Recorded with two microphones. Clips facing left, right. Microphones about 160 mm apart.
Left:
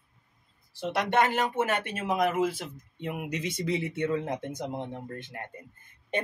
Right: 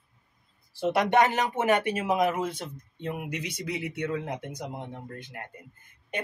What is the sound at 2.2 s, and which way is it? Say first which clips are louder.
Speech: even; centre (ahead or behind).